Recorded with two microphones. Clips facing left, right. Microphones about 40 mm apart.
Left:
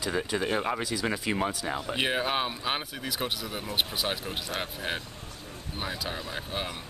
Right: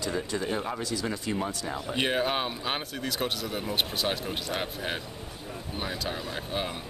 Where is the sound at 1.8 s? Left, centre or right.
Centre.